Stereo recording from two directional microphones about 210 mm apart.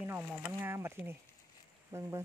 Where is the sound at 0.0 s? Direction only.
5° right (ahead or behind).